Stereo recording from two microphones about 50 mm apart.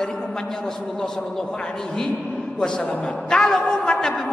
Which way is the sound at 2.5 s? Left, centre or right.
Centre.